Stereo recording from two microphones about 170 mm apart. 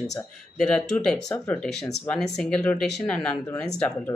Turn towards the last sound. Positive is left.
turn(degrees=10)  # may be behind; listen again after turning